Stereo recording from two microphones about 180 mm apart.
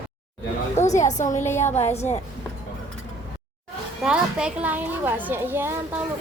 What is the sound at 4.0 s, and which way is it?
A woman's voice, 5° right (ahead or behind).